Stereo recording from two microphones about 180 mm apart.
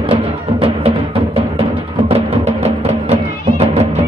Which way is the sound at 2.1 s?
35° right (ahead or behind).